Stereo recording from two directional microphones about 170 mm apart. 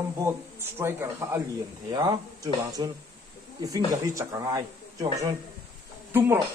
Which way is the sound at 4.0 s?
20° right (ahead or behind).